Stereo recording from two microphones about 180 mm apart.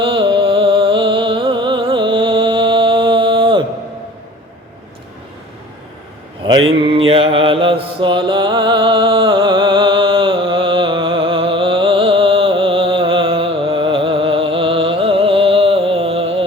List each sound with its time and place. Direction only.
0.0 s music: 30° right (ahead or behind)
6.8 s mantra: 30° right (ahead or behind)